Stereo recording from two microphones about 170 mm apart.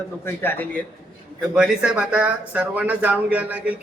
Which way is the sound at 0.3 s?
10° left (ahead or behind).